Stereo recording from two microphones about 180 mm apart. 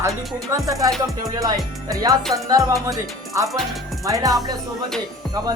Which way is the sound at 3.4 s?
Centre (ahead or behind).